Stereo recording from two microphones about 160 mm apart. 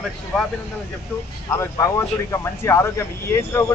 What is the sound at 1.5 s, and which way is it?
Speech, 20° left (ahead or behind).